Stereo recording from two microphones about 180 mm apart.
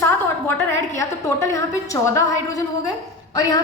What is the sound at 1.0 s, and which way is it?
A woman's voice, 15° left (ahead or behind).